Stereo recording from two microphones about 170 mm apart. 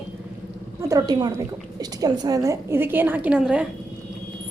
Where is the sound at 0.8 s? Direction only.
20° right (ahead or behind).